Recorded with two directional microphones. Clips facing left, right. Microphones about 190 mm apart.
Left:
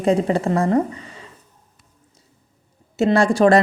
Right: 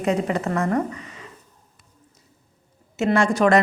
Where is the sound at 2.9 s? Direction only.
35° left (ahead or behind).